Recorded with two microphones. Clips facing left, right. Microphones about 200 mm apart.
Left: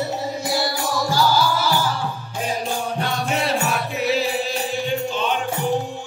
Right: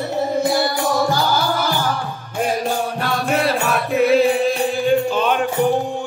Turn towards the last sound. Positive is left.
turn(degrees=-55)  # may be behind; listen again after turning